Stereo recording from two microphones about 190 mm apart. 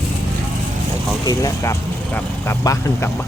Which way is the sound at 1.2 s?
20° left (ahead or behind).